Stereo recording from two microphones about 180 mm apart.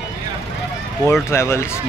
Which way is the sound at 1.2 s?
15° left (ahead or behind).